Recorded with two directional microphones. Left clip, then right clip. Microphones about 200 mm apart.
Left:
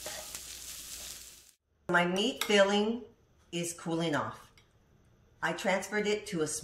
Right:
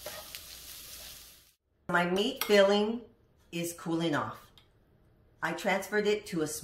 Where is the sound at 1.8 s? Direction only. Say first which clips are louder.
Even; centre (ahead or behind).